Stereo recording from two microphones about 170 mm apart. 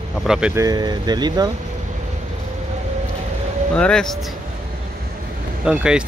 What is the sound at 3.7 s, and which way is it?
Speech, 5° left (ahead or behind).